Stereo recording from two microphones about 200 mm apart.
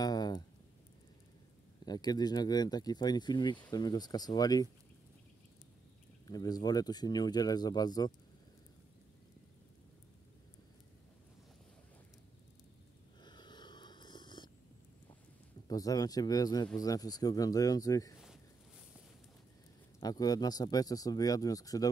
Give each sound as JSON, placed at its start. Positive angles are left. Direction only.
{"t": 0.0, "sound": "a sound", "side_deg": 20}
{"t": 1.9, "sound": "speech", "side_deg": 20}
{"t": 6.2, "sound": "speech", "side_deg": 20}
{"t": 13.2, "sound": "a sound", "side_deg": 20}
{"t": 15.7, "sound": "speech", "side_deg": 20}
{"t": 20.0, "sound": "speech", "side_deg": 20}